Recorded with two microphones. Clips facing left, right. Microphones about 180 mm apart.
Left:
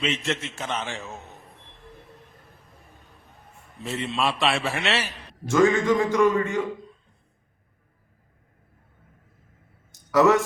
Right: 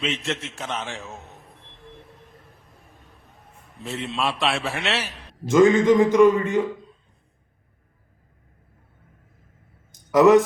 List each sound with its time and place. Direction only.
0.0 s a man's voice: centre (ahead or behind)
2.4 s a sound: centre (ahead or behind)
5.5 s a man's voice: 20° right (ahead or behind)
10.1 s speech: 20° right (ahead or behind)